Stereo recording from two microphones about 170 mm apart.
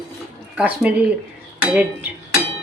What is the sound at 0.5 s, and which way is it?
Speech, 10° right (ahead or behind).